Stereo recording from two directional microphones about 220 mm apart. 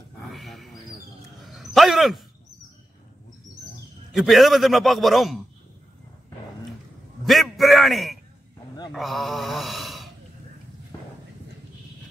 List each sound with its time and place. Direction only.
0.3 s a sound: centre (ahead or behind)
4.1 s a man's voice: centre (ahead or behind)
7.2 s a man's voice: centre (ahead or behind)